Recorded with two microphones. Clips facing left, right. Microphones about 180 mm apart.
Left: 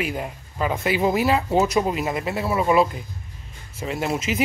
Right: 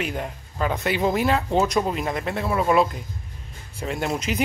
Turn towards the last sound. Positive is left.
turn(degrees=0)  # may be behind; listen again after turning